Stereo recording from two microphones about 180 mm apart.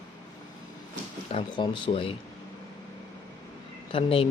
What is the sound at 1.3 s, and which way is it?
Speech, 30° left (ahead or behind).